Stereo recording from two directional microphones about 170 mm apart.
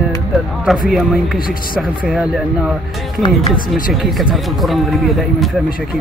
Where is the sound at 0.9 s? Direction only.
Centre (ahead or behind).